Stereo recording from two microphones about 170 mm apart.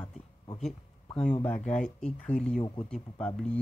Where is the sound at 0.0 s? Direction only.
30° left (ahead or behind).